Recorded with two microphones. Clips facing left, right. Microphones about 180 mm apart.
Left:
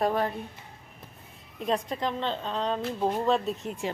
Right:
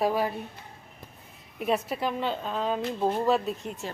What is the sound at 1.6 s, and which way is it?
A woman's voice, 10° right (ahead or behind).